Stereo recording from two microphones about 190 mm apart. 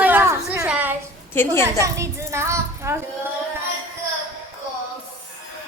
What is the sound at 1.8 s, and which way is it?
A woman's voice, 15° right (ahead or behind).